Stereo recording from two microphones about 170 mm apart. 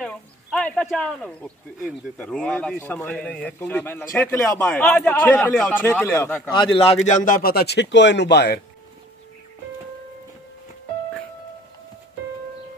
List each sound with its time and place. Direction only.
0.0 s speech: 5° left (ahead or behind)
6.5 s a man's voice: 30° left (ahead or behind)
7.2 s speech: 55° left (ahead or behind); by 8.5 s 80° left